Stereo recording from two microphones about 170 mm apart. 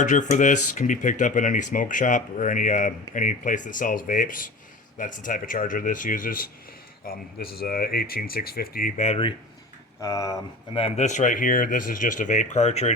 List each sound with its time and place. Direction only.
0.0 s speech: 45° left (ahead or behind); by 8.9 s 60° left (ahead or behind)
9.0 s speech: 35° left (ahead or behind)
10.0 s speech: 20° left (ahead or behind)
10.8 s speech: 40° left (ahead or behind)